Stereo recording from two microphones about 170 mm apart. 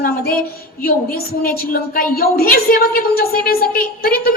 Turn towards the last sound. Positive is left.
turn(degrees=60)  # may be behind; listen again after turning